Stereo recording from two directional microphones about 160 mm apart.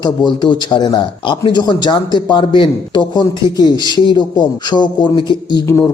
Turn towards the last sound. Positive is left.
turn(degrees=30)  # may be behind; listen again after turning